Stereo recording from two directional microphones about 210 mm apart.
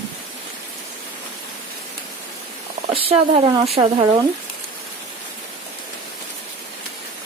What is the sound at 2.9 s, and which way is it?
Speech, 25° right (ahead or behind).